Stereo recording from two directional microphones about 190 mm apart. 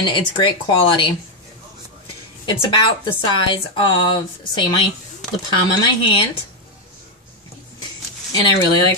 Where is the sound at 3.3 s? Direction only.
25° left (ahead or behind).